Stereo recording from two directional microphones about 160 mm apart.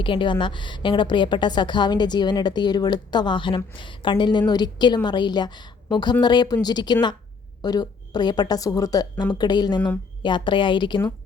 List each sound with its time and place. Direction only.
0.0 s a woman's voice: 30° left (ahead or behind)